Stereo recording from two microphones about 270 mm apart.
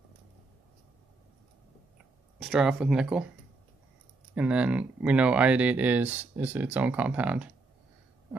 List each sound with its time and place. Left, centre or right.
2.4 s speech: centre
4.4 s speech: centre